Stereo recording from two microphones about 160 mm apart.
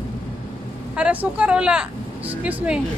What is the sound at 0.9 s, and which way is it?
Speech, 10° right (ahead or behind).